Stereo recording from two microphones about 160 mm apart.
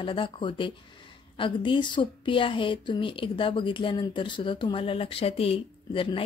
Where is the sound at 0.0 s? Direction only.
30° left (ahead or behind).